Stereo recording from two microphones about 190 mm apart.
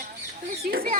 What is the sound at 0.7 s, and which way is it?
Speech, 50° right (ahead or behind).